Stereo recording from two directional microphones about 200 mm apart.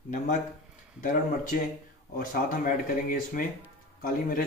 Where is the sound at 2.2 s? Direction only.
40° left (ahead or behind).